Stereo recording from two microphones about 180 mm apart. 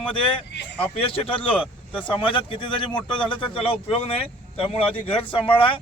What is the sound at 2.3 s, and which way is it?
Speech, 25° left (ahead or behind).